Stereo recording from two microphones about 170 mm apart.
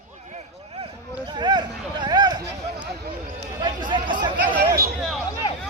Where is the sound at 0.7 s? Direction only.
30° right (ahead or behind).